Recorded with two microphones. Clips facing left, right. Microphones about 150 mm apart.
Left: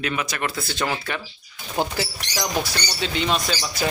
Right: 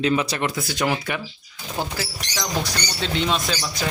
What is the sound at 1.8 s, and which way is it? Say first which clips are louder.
Speech: left 4 dB; 20° left (ahead or behind).